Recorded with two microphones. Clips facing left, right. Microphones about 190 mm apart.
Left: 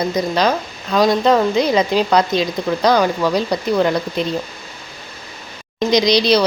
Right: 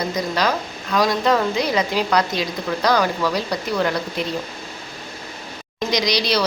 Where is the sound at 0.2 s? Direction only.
20° left (ahead or behind).